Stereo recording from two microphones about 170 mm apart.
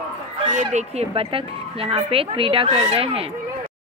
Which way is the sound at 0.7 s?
40° right (ahead or behind).